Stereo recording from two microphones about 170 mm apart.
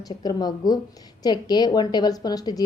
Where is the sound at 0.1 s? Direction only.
30° left (ahead or behind).